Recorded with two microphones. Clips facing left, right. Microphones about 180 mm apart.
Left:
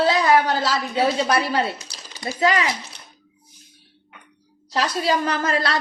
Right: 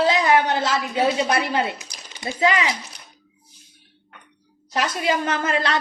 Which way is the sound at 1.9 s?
15° right (ahead or behind).